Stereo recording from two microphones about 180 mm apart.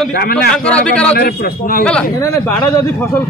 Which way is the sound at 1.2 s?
55° left (ahead or behind).